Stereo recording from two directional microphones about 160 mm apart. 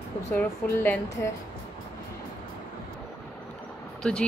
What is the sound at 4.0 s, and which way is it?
Speech, 5° left (ahead or behind).